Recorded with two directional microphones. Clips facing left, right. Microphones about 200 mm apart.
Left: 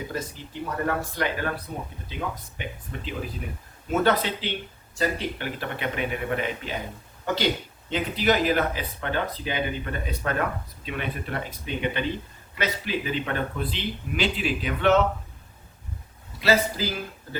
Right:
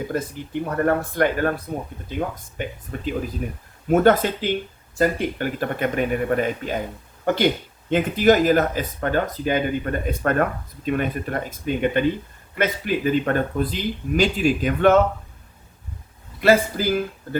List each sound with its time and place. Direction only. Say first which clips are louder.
0.1 s speech: right 7 dB; 55° right (ahead or behind)
16.4 s speech: right 5 dB; 50° right (ahead or behind)